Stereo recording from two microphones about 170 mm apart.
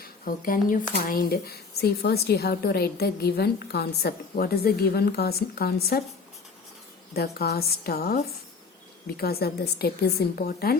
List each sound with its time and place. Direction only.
0.0 s speech: 55° left (ahead or behind)
7.1 s a woman's voice: 65° left (ahead or behind)